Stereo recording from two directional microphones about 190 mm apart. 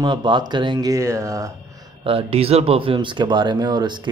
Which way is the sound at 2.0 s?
30° right (ahead or behind).